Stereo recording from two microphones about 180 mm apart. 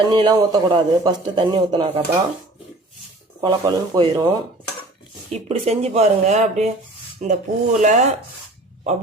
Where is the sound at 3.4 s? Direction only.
25° right (ahead or behind).